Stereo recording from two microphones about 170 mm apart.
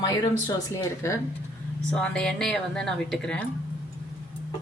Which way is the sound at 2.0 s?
5° left (ahead or behind).